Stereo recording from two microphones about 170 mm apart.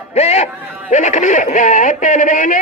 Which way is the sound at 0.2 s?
40° left (ahead or behind).